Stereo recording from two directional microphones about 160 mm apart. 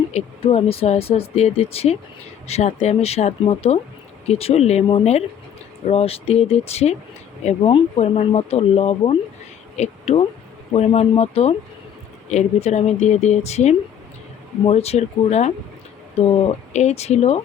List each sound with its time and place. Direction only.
0.1 s speech: 40° left (ahead or behind)